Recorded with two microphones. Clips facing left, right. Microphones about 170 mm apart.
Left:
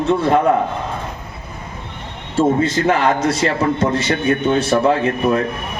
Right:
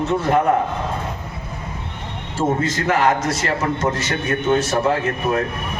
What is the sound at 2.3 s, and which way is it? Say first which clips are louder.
A man's voice: left 5 dB; 60° left (ahead or behind).